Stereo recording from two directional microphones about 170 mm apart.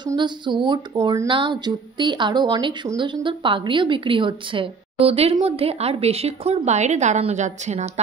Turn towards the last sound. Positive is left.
turn(degrees=-45)  # may be behind; listen again after turning